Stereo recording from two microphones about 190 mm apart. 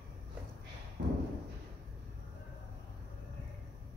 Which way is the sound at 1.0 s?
70° right (ahead or behind).